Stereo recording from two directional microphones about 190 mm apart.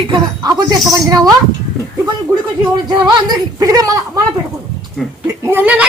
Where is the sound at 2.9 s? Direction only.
20° right (ahead or behind).